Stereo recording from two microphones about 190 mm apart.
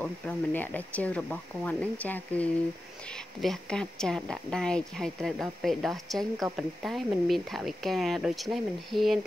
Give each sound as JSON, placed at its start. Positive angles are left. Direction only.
{"t": 0.0, "sound": "a woman's voice", "side_deg": 10}